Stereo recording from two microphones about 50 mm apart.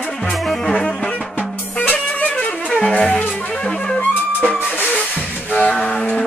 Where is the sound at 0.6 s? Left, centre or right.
Centre.